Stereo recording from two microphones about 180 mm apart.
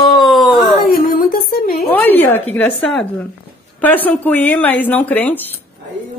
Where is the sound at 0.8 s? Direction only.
55° left (ahead or behind).